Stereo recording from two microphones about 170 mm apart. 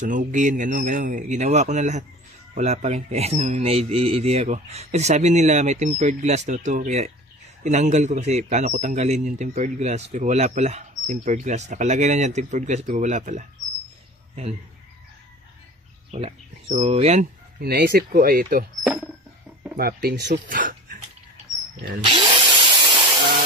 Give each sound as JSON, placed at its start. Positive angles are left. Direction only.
{"t": 0.0, "sound": "a man's voice", "side_deg": -50}
{"t": 16.1, "sound": "speech", "side_deg": -40}
{"t": 17.6, "sound": "speech", "side_deg": -65}
{"t": 19.8, "sound": "speech", "side_deg": -65}
{"t": 20.4, "sound": "a man's voice", "side_deg": -55}
{"t": 22.0, "sound": "tools", "side_deg": -30}